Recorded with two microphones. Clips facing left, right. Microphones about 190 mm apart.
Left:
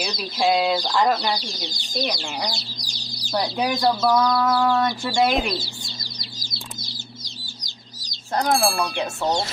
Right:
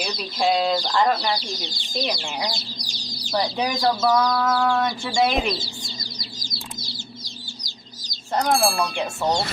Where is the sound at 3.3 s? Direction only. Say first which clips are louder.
Left 1 dB; 5° left (ahead or behind).